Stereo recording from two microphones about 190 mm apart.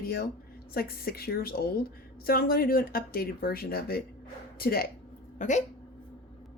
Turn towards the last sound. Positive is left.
turn(degrees=40)  # may be behind; listen again after turning